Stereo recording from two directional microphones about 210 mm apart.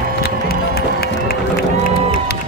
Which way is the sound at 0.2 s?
45° left (ahead or behind).